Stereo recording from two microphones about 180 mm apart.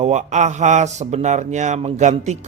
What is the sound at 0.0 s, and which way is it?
A man's voice, 40° right (ahead or behind).